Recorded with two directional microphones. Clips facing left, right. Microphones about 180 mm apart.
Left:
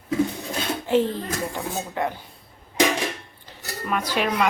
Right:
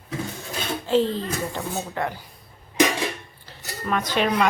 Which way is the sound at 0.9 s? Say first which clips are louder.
Right 1 dB; 20° left (ahead or behind).